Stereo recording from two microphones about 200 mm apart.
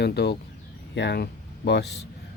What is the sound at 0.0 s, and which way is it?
Speech, 55° left (ahead or behind).